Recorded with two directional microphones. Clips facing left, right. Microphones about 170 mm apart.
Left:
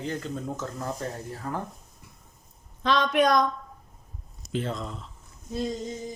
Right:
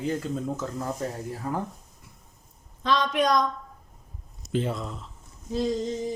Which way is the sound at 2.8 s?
65° left (ahead or behind).